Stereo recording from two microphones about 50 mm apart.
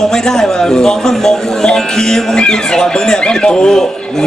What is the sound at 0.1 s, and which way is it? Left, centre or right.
Speech, centre.